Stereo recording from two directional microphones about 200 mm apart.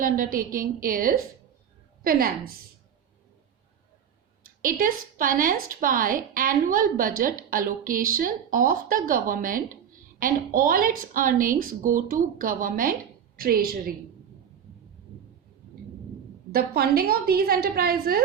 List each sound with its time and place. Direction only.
0.0 s a woman's voice: 45° right (ahead or behind)
4.6 s a woman's voice: 45° right (ahead or behind)
16.5 s a woman's voice: 50° right (ahead or behind)